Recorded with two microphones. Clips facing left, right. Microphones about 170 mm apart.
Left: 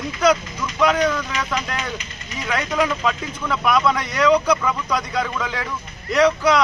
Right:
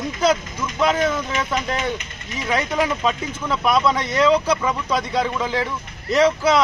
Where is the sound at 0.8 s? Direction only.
25° right (ahead or behind).